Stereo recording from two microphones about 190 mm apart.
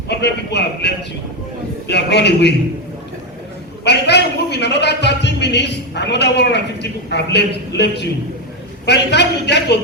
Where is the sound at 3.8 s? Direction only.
60° left (ahead or behind).